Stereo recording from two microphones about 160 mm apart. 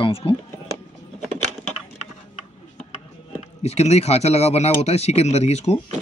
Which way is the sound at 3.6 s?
40° left (ahead or behind).